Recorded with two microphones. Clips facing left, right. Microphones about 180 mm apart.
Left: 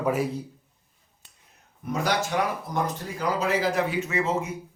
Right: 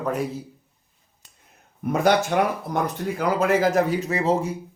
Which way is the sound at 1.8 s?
55° right (ahead or behind).